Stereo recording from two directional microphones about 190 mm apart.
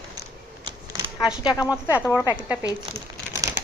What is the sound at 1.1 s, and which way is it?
Speech, 5° right (ahead or behind).